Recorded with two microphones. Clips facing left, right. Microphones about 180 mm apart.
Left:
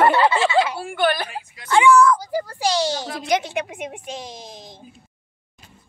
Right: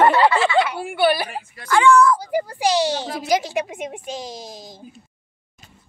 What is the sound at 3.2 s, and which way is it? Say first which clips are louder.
A woman's voice: right 1 dB; centre (ahead or behind).